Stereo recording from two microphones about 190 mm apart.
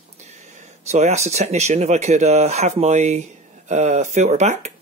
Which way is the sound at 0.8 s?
35° right (ahead or behind).